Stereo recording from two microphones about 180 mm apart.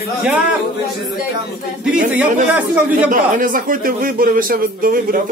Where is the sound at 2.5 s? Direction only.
5° right (ahead or behind).